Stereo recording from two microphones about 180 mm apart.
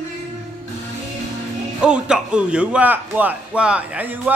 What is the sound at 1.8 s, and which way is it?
Speech, 5° right (ahead or behind).